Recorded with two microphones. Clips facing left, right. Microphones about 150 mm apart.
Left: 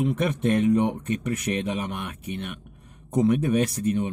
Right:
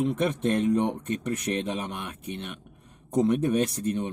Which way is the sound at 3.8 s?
5° left (ahead or behind).